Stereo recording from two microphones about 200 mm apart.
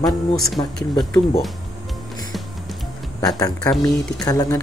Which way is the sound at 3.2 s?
15° left (ahead or behind).